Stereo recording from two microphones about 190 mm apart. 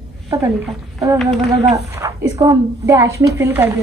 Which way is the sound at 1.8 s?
15° right (ahead or behind).